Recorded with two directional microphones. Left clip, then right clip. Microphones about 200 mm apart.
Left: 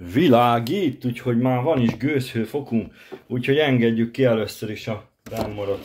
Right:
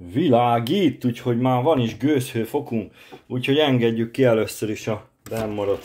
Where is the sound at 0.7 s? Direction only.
25° right (ahead or behind); by 4.9 s 45° right (ahead or behind).